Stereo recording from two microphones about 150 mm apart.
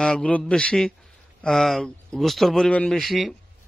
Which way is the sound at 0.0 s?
5° left (ahead or behind).